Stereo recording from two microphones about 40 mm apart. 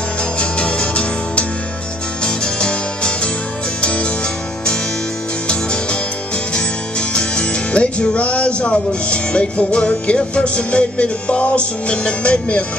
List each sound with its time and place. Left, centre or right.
0.4 s music: left
5.5 s music: left